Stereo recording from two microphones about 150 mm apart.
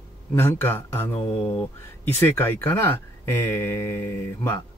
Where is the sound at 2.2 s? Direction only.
15° left (ahead or behind).